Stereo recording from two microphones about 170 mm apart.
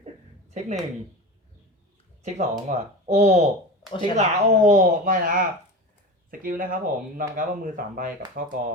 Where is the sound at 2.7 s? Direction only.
45° right (ahead or behind).